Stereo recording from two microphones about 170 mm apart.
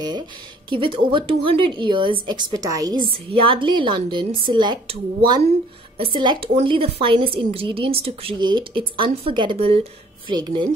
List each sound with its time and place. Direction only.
0.7 s a woman's voice: 30° right (ahead or behind)